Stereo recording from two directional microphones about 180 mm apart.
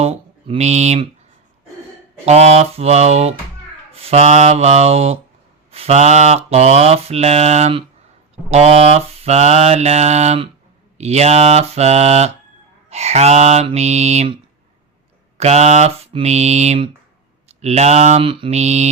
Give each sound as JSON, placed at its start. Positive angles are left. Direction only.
{"t": 0.0, "sound": "speech", "side_deg": -35}
{"t": 2.2, "sound": "mantra", "side_deg": -35}
{"t": 15.4, "sound": "mantra", "side_deg": -35}